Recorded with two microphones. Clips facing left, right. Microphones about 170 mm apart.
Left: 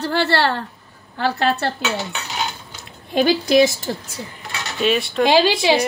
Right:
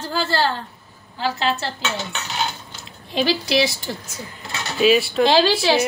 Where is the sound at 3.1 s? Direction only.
50° left (ahead or behind).